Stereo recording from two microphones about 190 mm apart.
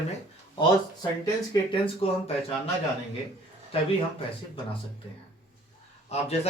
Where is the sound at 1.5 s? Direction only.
30° left (ahead or behind).